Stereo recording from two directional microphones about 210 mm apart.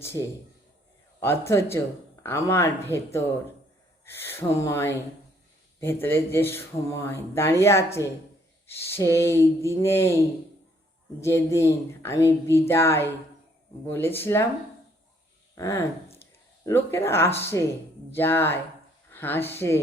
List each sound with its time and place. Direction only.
0.2 s speech: 15° left (ahead or behind)
15.5 s speech: 10° left (ahead or behind)